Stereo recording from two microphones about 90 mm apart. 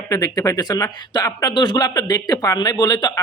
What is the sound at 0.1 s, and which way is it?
A man's voice, 40° left (ahead or behind).